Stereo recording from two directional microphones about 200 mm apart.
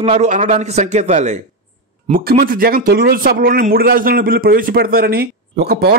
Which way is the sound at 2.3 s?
45° right (ahead or behind).